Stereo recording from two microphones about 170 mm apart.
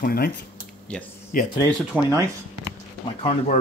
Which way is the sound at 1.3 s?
55° left (ahead or behind).